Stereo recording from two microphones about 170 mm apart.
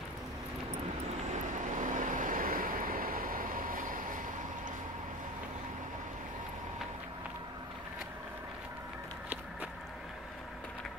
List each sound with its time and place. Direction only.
1.3 s vehicle: 45° right (ahead or behind)